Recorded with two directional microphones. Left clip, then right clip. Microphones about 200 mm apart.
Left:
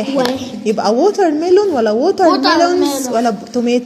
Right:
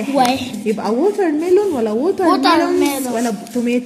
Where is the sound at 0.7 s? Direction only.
10° left (ahead or behind).